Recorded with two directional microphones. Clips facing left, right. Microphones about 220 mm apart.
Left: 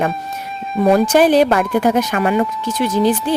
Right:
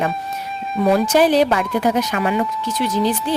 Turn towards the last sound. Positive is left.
turn(degrees=50)  # may be behind; listen again after turning